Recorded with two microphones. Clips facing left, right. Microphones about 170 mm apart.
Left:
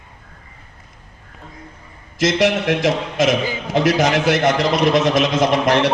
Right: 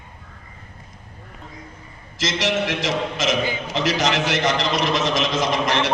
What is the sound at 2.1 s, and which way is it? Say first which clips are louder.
A man's voice: left 6 dB; 55° left (ahead or behind).